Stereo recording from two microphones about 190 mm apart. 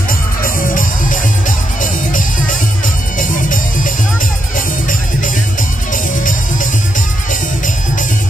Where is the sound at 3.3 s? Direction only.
45° left (ahead or behind).